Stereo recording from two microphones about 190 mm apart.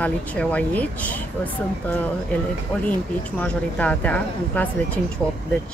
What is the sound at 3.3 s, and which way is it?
Speech, 5° left (ahead or behind).